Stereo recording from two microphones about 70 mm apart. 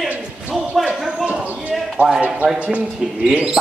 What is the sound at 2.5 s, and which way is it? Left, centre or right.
Speech, centre.